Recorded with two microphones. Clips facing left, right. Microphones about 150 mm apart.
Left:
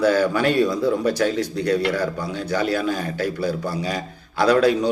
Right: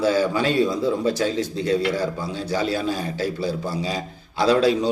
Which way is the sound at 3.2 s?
25° right (ahead or behind).